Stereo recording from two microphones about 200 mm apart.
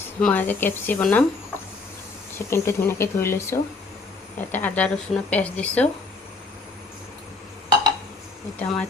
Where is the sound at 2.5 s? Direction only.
15° left (ahead or behind).